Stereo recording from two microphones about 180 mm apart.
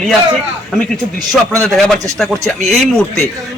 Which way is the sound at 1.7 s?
Centre (ahead or behind).